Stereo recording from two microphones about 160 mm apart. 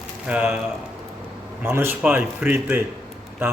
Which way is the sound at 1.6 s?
15° right (ahead or behind).